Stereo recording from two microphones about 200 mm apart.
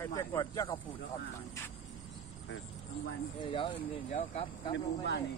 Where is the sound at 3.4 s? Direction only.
25° left (ahead or behind).